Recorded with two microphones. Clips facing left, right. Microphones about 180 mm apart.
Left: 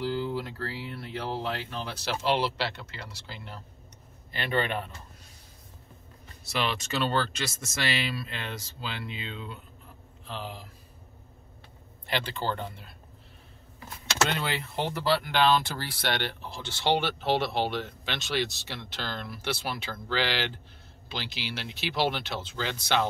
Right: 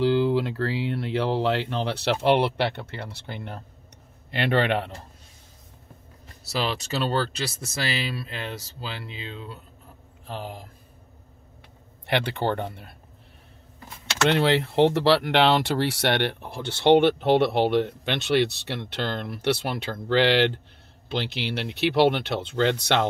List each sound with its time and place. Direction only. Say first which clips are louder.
0.0 s speech: right 9 dB; 80° right
6.5 s speech: right 3 dB; 35° right (ahead or behind)
10.2 s speech: right 3 dB; 45° right (ahead or behind)
12.1 s speech: right 6 dB; 65° right (ahead or behind)
14.3 s speech: right 10 dB; 80° right